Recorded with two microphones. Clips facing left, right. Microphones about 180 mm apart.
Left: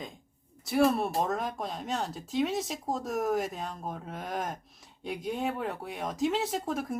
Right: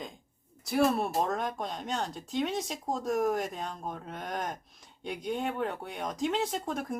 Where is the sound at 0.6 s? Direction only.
Centre (ahead or behind).